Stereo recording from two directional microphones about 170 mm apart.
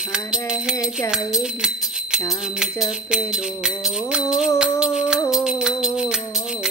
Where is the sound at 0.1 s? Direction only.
5° right (ahead or behind).